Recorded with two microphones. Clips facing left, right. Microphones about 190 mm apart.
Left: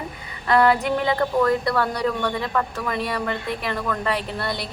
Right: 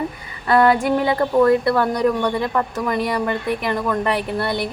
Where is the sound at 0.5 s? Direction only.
5° right (ahead or behind).